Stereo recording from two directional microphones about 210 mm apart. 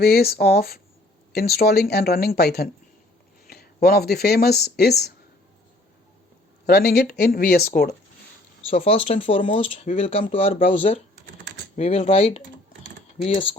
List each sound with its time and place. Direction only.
0.0 s speech: 45° left (ahead or behind)
6.7 s speech: 50° left (ahead or behind)
8.7 s speech: 30° left (ahead or behind)